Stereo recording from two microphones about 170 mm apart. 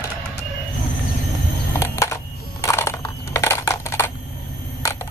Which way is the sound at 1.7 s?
15° left (ahead or behind).